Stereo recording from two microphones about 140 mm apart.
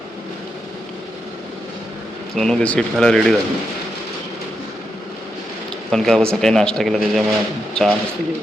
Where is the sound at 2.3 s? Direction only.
5° left (ahead or behind).